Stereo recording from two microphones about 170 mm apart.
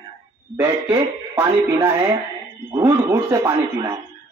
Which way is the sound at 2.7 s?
20° right (ahead or behind).